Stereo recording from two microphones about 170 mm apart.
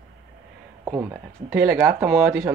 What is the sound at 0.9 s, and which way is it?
Speech, 15° right (ahead or behind).